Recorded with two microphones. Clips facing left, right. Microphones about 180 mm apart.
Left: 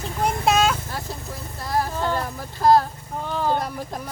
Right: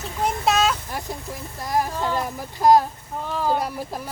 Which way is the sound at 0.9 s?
15° right (ahead or behind).